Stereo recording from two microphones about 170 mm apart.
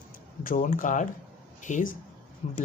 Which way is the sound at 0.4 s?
55° left (ahead or behind).